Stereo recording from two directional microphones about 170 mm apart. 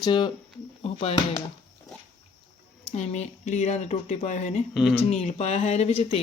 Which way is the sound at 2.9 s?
40° left (ahead or behind).